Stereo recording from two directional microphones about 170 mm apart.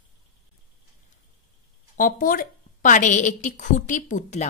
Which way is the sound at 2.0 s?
50° left (ahead or behind).